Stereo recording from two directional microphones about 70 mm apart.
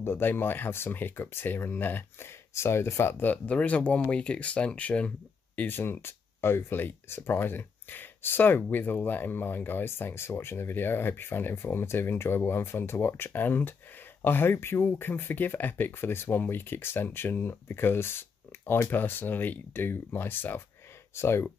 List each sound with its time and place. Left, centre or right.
0.0 s speech: left
2.5 s speech: left; by 5.1 s centre
5.6 s speech: left